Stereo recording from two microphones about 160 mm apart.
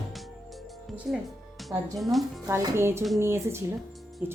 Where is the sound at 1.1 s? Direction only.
Centre (ahead or behind).